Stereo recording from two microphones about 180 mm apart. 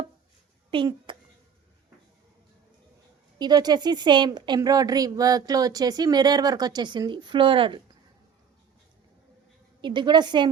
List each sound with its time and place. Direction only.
0.7 s speech: 30° right (ahead or behind)
3.3 s speech: 25° right (ahead or behind)
9.8 s speech: 25° right (ahead or behind)